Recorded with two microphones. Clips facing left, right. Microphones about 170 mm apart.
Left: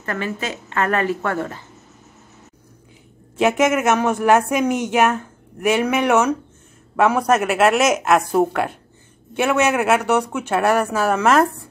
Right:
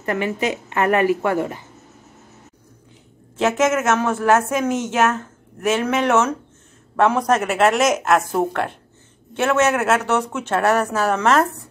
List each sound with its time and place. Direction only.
0.0 s speech: 15° right (ahead or behind)
3.3 s speech: 15° left (ahead or behind)